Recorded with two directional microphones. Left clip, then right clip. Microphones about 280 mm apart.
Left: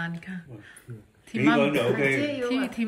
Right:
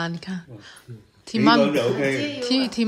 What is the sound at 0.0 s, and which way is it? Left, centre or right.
Speech, centre.